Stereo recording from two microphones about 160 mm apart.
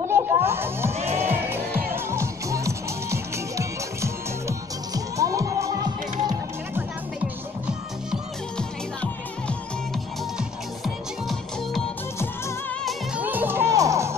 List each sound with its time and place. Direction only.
0.1 s music: 15° right (ahead or behind)
0.9 s music: 40° right (ahead or behind)
1.2 s music: 15° right (ahead or behind)
8.1 s music: 5° left (ahead or behind)
12.8 s music: 10° right (ahead or behind)